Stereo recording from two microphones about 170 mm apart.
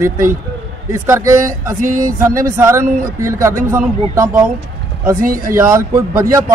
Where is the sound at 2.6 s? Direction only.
15° right (ahead or behind).